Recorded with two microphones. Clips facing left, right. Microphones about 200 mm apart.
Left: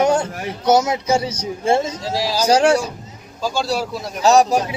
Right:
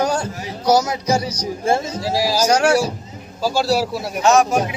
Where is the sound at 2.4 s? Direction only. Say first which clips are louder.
Left 3 dB; 30° left (ahead or behind).